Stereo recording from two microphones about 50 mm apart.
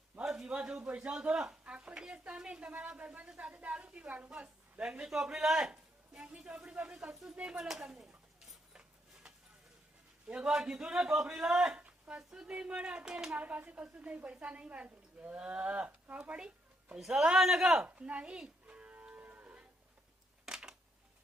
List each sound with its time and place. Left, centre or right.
0.3 s a sound: centre
1.2 s a woman's voice: right
6.1 s a woman's voice: centre
7.1 s a man's voice: centre
7.6 s a man's voice: centre
8.7 s a sound: centre
10.2 s a woman's voice: right
10.5 s a man's voice: centre
17.1 s a man's voice: centre
17.8 s a woman's voice: right
18.7 s livestock: right
20.4 s a sound: centre